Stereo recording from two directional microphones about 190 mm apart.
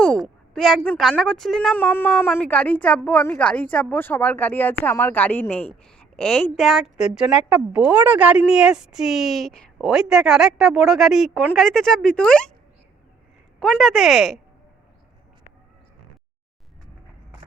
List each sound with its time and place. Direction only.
0.5 s speech: centre (ahead or behind)
13.6 s speech: centre (ahead or behind)